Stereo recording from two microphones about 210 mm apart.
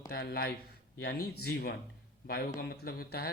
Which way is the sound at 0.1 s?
50° left (ahead or behind).